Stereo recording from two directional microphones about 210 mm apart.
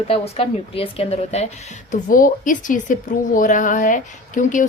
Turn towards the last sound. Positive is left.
turn(degrees=40)  # may be behind; listen again after turning